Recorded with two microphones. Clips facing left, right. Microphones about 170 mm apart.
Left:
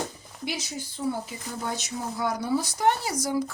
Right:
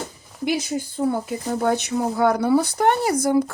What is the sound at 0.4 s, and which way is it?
Speech, 50° right (ahead or behind).